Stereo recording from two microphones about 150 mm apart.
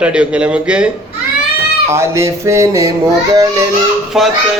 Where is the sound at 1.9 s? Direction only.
20° right (ahead or behind).